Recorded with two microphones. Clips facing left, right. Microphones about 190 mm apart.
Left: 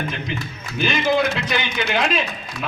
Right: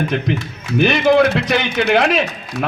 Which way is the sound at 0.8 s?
65° right (ahead or behind).